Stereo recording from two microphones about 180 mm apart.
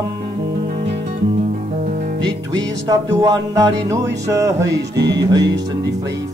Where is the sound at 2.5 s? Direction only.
20° right (ahead or behind).